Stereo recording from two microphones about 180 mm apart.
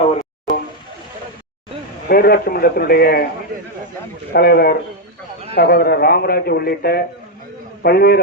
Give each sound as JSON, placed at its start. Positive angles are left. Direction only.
{"t": 2.0, "sound": "a man's voice", "side_deg": 55}
{"t": 4.3, "sound": "a man's voice", "side_deg": 60}